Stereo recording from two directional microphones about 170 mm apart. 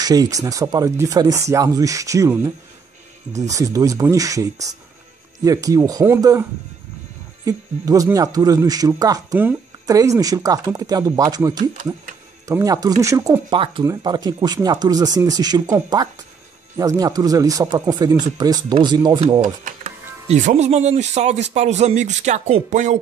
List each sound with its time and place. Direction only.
0.0 s speech: 20° right (ahead or behind)
7.4 s speech: 20° right (ahead or behind)
11.5 s speech: 50° right (ahead or behind)
12.4 s speech: 20° right (ahead or behind)
19.4 s speech: 45° right (ahead or behind)